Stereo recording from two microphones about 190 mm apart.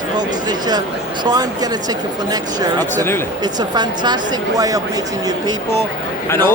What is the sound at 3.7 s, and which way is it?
Speech, 20° right (ahead or behind).